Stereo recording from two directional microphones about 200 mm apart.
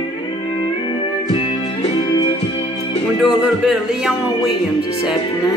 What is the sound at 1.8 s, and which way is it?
Music, 25° left (ahead or behind).